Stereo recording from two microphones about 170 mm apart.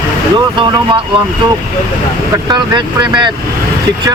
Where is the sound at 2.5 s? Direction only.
25° right (ahead or behind).